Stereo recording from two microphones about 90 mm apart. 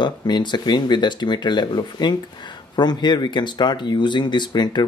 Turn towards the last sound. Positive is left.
turn(degrees=55)  # may be behind; listen again after turning